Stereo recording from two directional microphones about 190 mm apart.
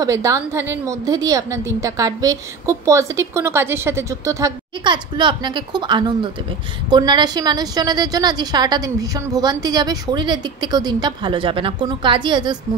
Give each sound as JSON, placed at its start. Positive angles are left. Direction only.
{"t": 0.0, "sound": "a woman's voice", "side_deg": -15}